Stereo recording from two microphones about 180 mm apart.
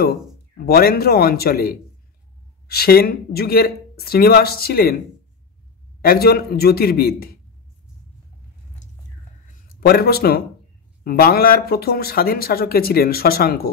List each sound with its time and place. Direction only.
0.6 s speech: 55° left (ahead or behind)
9.8 s speech: 60° left (ahead or behind)